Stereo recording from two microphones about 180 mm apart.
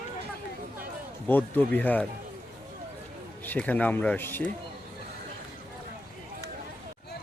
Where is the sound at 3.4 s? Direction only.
10° left (ahead or behind).